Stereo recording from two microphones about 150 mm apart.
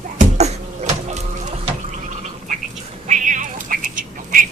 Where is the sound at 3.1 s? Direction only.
60° right (ahead or behind).